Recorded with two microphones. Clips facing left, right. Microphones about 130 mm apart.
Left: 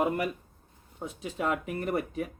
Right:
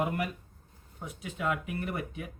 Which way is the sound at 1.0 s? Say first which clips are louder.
Left 3 dB; 30° left (ahead or behind).